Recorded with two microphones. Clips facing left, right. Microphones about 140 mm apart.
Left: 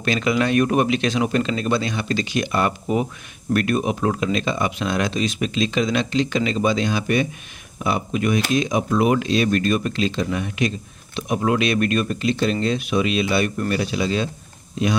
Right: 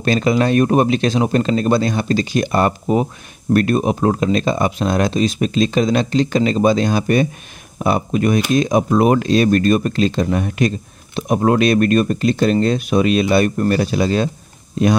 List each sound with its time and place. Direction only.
0.0 s speech: 35° right (ahead or behind)